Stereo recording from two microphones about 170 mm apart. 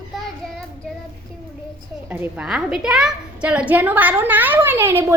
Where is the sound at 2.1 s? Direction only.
10° right (ahead or behind).